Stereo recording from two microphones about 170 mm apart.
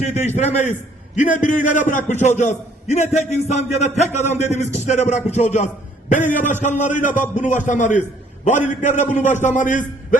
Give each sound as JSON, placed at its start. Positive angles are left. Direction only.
{"t": 0.0, "sound": "a man's voice", "side_deg": 40}